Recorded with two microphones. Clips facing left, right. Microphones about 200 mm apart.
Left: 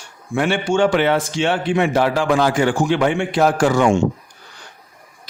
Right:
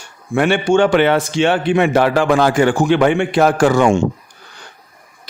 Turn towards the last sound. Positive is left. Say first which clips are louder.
# right 3 dB
turn(degrees=-60)  # may be behind; listen again after turning